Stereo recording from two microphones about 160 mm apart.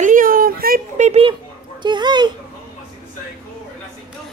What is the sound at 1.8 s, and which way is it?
Speech, 30° right (ahead or behind).